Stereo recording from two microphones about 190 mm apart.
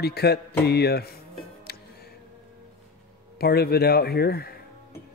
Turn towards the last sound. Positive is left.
turn(degrees=55)  # may be behind; listen again after turning